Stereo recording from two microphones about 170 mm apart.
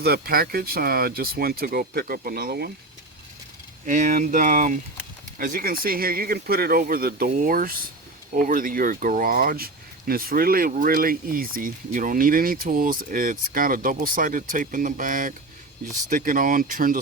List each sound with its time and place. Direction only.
0.0 s speech: 65° right (ahead or behind)
3.8 s speech: 45° right (ahead or behind)